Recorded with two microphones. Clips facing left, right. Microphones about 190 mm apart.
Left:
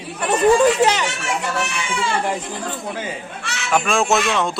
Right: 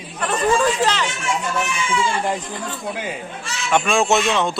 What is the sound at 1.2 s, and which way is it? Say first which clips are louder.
Speech: even; 70° left (ahead or behind).